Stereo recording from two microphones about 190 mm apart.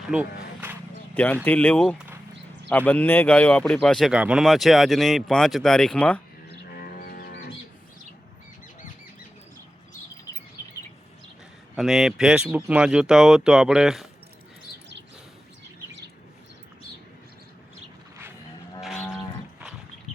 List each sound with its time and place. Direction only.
0.1 s a sound: 10° right (ahead or behind)
1.1 s speech: 10° left (ahead or behind)
6.7 s music: 50° left (ahead or behind)
10.6 s bird: 20° left (ahead or behind)
11.8 s speech: centre (ahead or behind)
18.8 s livestock: centre (ahead or behind)